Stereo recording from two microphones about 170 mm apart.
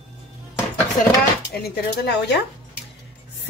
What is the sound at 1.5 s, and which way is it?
Speech, 75° left (ahead or behind).